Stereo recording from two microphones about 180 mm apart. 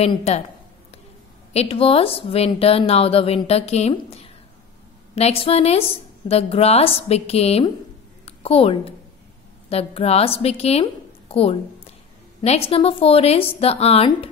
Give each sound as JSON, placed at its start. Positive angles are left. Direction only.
{"t": 0.0, "sound": "a woman's voice", "side_deg": 35}
{"t": 1.5, "sound": "a woman's voice", "side_deg": 35}